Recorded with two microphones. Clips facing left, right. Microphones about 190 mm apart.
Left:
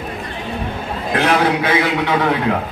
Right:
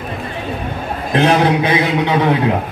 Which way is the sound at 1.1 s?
20° right (ahead or behind).